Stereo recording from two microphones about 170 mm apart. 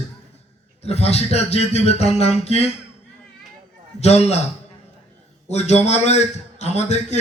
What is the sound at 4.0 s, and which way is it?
Speech, 40° left (ahead or behind).